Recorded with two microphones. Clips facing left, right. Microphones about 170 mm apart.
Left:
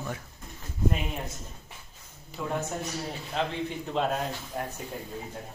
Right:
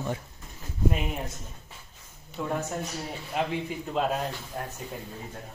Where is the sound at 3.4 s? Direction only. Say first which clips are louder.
Right 1 dB; 10° right (ahead or behind).